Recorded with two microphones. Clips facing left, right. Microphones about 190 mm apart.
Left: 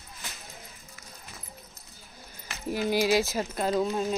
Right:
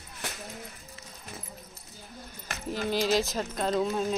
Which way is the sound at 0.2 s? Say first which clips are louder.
Right 7 dB; 75° right (ahead or behind).